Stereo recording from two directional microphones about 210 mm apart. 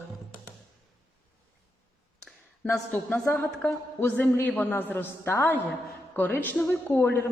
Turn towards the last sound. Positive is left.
turn(degrees=10)  # may be behind; listen again after turning